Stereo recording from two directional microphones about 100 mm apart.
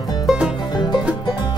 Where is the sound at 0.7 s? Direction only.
45° left (ahead or behind).